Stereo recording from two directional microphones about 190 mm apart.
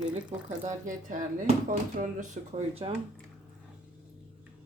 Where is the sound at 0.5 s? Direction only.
40° right (ahead or behind).